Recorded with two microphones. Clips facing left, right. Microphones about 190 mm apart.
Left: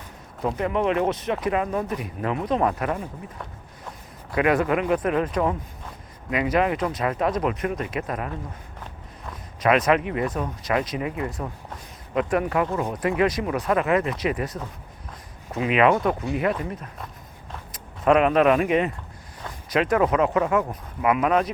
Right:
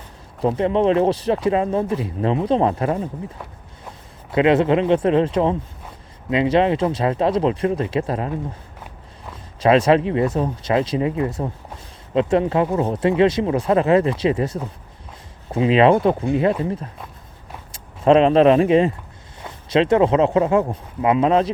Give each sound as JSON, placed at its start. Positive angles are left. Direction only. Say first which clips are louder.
{"t": 0.4, "sound": "speech", "louder": "right 6 dB", "side_deg": -30}
{"t": 4.3, "sound": "speech", "louder": "right 5 dB", "side_deg": -25}
{"t": 9.3, "sound": "speech", "louder": "right 5 dB", "side_deg": -30}